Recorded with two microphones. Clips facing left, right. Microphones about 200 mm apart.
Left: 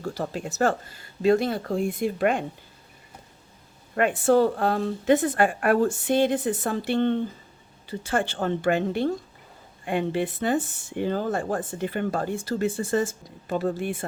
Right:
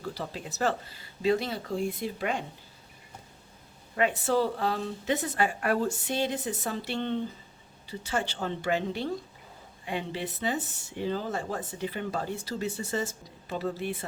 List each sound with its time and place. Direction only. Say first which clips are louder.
0.0 s speech: left 6 dB; 45° left (ahead or behind)
3.9 s speech: left 6 dB; 55° left (ahead or behind)